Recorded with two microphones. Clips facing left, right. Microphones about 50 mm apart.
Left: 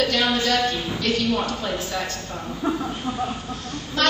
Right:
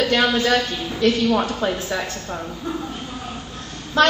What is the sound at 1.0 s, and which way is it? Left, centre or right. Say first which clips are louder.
Speech: right 6 dB; right.